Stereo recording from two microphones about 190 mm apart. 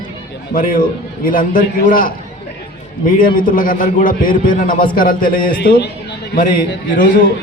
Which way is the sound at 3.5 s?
50° left (ahead or behind).